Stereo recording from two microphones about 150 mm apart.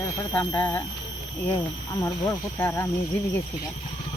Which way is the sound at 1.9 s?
20° left (ahead or behind).